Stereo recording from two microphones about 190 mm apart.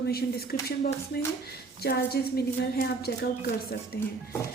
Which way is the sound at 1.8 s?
55° left (ahead or behind).